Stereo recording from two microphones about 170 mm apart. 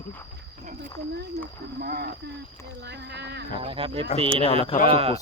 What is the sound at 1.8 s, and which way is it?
Speech, 65° right (ahead or behind).